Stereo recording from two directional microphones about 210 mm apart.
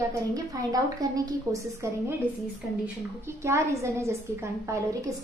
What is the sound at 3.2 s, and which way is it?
A woman's voice, 15° right (ahead or behind).